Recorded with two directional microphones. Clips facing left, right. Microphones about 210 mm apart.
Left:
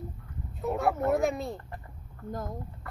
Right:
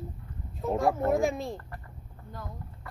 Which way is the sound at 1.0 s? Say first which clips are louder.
Even; centre (ahead or behind).